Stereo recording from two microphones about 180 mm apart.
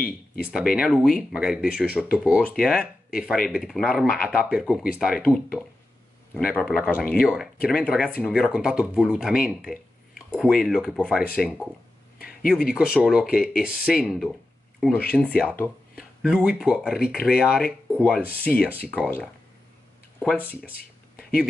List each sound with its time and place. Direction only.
0.4 s speech: 5° right (ahead or behind)
12.2 s a sound: 55° left (ahead or behind)
12.4 s speech: centre (ahead or behind)
16.0 s speech: 5° right (ahead or behind)